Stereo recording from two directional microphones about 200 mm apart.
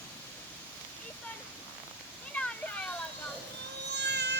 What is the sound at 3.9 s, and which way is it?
Cat, 55° right (ahead or behind).